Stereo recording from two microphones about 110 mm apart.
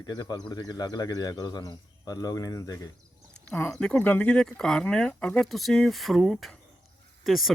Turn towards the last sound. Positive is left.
turn(degrees=0)  # may be behind; listen again after turning